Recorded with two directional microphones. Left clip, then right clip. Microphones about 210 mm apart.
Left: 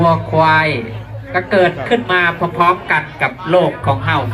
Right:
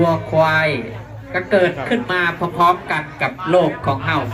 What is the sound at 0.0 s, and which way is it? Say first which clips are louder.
Speech: left 3 dB; 50° right (ahead or behind).